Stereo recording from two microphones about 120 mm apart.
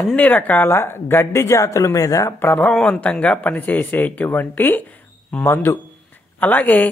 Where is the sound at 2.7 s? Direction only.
5° left (ahead or behind).